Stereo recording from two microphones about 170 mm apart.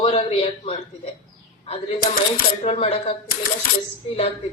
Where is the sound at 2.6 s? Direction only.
35° left (ahead or behind).